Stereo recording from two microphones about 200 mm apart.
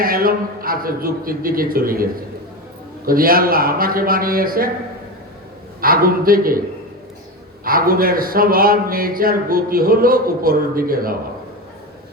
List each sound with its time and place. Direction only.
0.0 s a man's voice: 45° right (ahead or behind)
3.1 s a man's voice: 45° right (ahead or behind)
5.8 s a man's voice: 45° right (ahead or behind)
7.6 s a man's voice: 45° right (ahead or behind)